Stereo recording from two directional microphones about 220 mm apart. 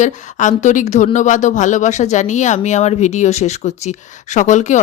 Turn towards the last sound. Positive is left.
turn(degrees=35)  # may be behind; listen again after turning